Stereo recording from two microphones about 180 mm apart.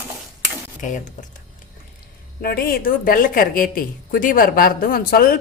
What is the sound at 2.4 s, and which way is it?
A woman's voice, 60° left (ahead or behind).